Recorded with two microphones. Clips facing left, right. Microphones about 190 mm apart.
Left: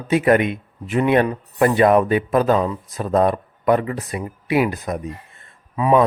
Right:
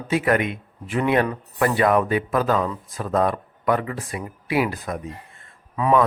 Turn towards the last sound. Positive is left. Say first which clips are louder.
# left 3 dB
turn(degrees=10)  # may be behind; listen again after turning